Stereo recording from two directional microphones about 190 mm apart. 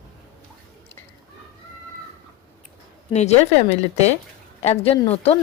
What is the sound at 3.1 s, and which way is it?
Speech, 35° left (ahead or behind).